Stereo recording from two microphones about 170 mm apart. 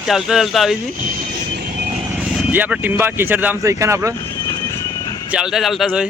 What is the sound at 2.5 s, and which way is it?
Speech, 10° right (ahead or behind).